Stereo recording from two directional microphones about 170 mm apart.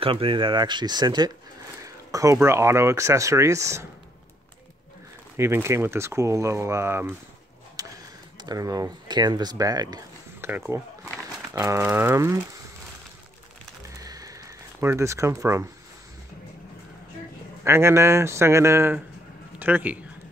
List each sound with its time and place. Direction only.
0.0 s speech: 30° right (ahead or behind)
5.4 s speech: 15° right (ahead or behind)
7.8 s a sound: 20° right (ahead or behind)
8.4 s speech: 20° right (ahead or behind)
14.0 s a sound: 20° right (ahead or behind)
17.6 s a man's voice: 15° right (ahead or behind)